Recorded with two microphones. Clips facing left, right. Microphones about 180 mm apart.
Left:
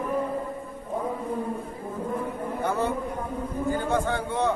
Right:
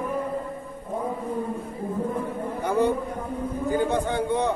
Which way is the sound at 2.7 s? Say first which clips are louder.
Right 5 dB; 15° right (ahead or behind).